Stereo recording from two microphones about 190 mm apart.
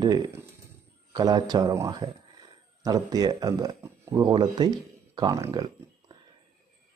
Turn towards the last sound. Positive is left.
turn(degrees=-20)  # may be behind; listen again after turning